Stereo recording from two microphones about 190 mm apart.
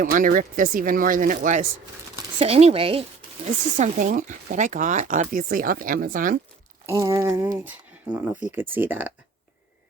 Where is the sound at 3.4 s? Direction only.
40° right (ahead or behind).